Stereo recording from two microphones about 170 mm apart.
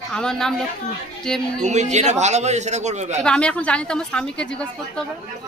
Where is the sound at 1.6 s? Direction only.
45° right (ahead or behind).